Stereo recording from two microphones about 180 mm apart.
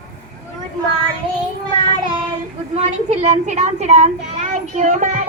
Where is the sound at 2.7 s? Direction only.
40° right (ahead or behind).